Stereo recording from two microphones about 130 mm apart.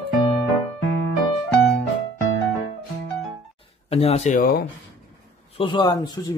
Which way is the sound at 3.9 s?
50° left (ahead or behind).